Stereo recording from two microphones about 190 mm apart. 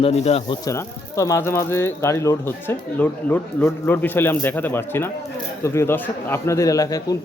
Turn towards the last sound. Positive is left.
turn(degrees=20)  # may be behind; listen again after turning